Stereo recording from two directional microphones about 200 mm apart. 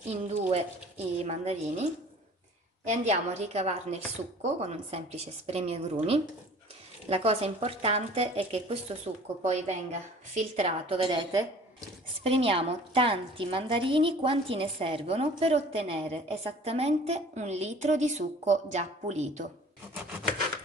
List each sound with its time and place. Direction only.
0.5 s a woman's voice: 30° right (ahead or behind)
2.9 s a woman's voice: 35° right (ahead or behind)